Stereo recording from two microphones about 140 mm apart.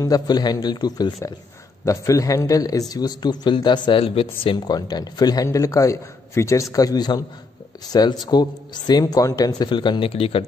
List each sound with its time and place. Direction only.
0.0 s speech: 30° left (ahead or behind)